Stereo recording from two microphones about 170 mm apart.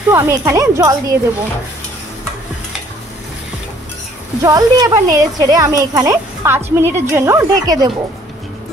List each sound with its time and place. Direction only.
0.1 s a woman's voice: 15° right (ahead or behind)
4.4 s a woman's voice: 20° right (ahead or behind)